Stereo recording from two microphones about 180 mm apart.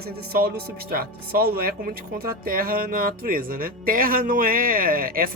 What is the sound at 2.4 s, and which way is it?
Music, 55° right (ahead or behind).